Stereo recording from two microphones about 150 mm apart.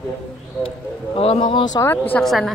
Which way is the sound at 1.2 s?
40° left (ahead or behind).